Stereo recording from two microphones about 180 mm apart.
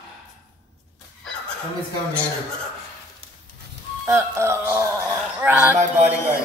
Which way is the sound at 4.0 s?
15° right (ahead or behind).